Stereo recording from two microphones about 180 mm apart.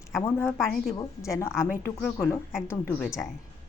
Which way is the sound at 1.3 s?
15° left (ahead or behind).